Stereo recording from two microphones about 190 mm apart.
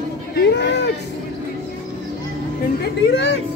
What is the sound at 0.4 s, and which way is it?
Speech, 65° left (ahead or behind).